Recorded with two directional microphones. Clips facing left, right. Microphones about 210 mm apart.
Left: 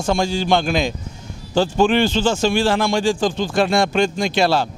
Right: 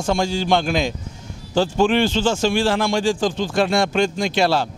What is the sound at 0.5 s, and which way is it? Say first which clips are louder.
A man's voice: left 1 dB; 15° left (ahead or behind).